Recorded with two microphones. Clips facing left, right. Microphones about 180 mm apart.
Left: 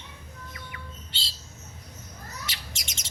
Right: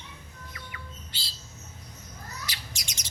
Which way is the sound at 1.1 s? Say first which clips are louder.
Left 3 dB; 25° left (ahead or behind).